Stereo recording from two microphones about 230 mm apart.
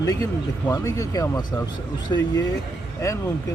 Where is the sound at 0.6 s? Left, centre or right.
Centre.